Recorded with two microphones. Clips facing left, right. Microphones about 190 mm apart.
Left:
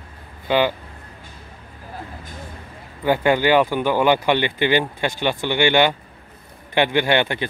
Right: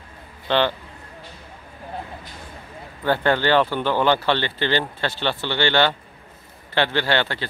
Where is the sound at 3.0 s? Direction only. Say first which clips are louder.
Left 3 dB; 10° left (ahead or behind).